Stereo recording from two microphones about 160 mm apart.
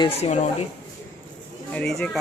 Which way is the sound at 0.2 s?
45° left (ahead or behind).